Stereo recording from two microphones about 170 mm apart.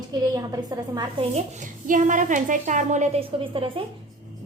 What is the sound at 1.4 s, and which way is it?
A woman's voice, 45° right (ahead or behind).